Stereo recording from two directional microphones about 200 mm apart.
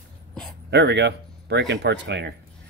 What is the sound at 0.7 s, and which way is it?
A man's voice, 60° right (ahead or behind).